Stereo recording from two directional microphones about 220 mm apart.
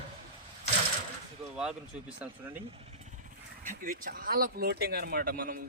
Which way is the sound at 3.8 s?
40° right (ahead or behind).